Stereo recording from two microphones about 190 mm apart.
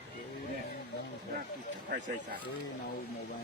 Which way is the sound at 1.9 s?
50° right (ahead or behind).